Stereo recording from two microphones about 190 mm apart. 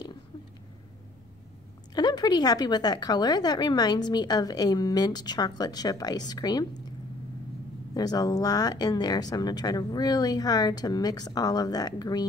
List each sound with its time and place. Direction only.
2.0 s a woman's voice: 20° left (ahead or behind)
7.9 s a woman's voice: 20° left (ahead or behind)